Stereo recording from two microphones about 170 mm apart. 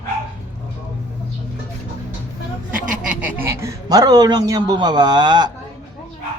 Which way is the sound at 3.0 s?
10° right (ahead or behind).